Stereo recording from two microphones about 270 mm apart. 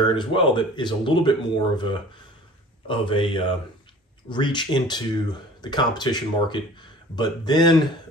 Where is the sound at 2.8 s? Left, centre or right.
Centre.